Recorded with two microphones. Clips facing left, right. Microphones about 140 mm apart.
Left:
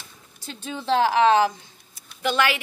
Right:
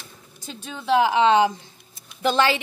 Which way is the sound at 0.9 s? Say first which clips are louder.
Right 1 dB; 15° right (ahead or behind).